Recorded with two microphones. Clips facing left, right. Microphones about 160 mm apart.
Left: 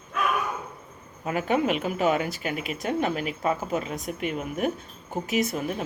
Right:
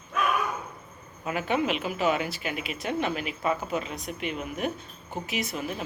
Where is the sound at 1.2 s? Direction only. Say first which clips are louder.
Left 3 dB; 45° left (ahead or behind).